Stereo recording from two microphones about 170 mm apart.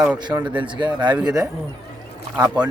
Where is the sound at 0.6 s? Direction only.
30° right (ahead or behind).